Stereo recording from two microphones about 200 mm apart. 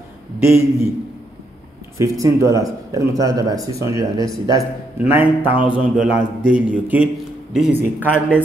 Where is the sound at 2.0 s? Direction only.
15° right (ahead or behind).